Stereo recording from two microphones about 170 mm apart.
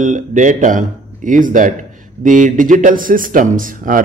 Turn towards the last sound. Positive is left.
turn(degrees=-50)  # may be behind; listen again after turning